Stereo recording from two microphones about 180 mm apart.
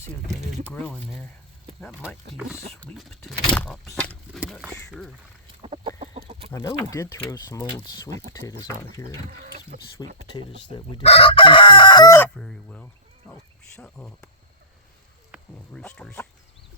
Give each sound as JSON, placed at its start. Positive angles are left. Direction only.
{"t": 0.6, "sound": "speech", "side_deg": 10}
{"t": 1.9, "sound": "speech", "side_deg": -5}
{"t": 5.6, "sound": "chicken", "side_deg": -30}
{"t": 6.5, "sound": "chicken", "side_deg": 20}
{"t": 8.4, "sound": "speech", "side_deg": 15}
{"t": 10.0, "sound": "chicken", "side_deg": 20}
{"t": 12.4, "sound": "speech", "side_deg": 5}
{"t": 15.5, "sound": "speech", "side_deg": 10}